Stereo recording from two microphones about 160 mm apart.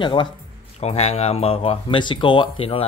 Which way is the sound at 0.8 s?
40° left (ahead or behind).